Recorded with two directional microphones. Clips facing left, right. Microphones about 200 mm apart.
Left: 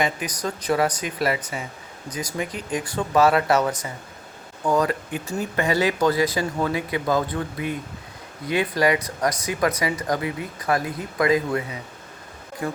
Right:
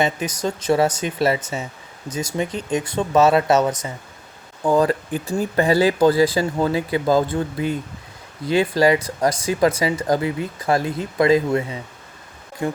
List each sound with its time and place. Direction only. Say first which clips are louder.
0.0 s speech: right 4 dB; 25° right (ahead or behind)